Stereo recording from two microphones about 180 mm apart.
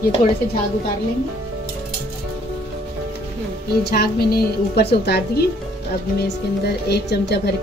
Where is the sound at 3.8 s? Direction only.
60° left (ahead or behind).